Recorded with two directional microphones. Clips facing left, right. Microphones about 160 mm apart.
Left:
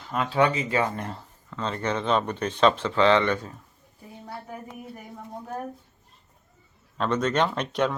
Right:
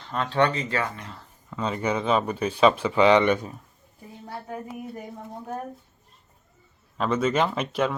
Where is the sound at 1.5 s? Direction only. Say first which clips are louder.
Right 2 dB; 10° right (ahead or behind).